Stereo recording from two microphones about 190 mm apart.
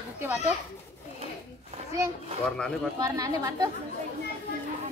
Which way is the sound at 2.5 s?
5° left (ahead or behind).